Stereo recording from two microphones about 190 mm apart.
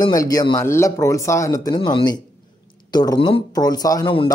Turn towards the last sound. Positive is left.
turn(degrees=25)  # may be behind; listen again after turning